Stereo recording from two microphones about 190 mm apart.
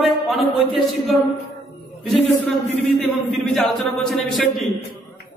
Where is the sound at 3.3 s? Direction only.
Centre (ahead or behind).